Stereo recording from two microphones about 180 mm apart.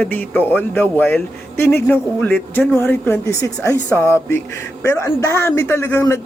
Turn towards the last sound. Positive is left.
turn(degrees=15)  # may be behind; listen again after turning